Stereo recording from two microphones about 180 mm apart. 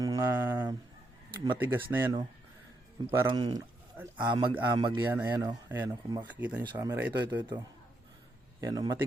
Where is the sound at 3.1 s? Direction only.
20° right (ahead or behind).